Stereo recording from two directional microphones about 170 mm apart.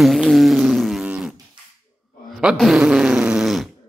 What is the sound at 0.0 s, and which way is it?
Fart, centre (ahead or behind).